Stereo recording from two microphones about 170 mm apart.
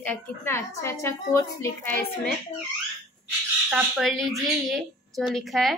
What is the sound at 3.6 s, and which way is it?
A woman's voice, 5° right (ahead or behind).